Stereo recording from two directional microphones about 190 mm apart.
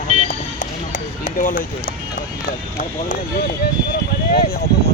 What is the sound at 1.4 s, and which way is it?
Speech, 45° left (ahead or behind).